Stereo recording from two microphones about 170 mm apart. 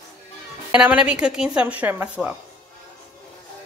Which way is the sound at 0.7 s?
5° right (ahead or behind).